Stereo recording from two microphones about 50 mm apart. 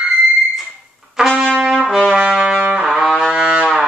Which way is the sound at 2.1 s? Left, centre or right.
Centre.